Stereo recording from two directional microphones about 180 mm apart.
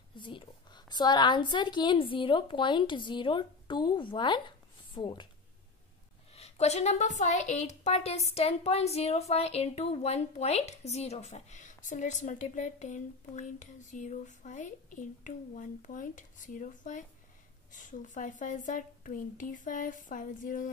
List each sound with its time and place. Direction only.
0.1 s a woman's voice: 25° left (ahead or behind)
6.3 s a woman's voice: 35° left (ahead or behind)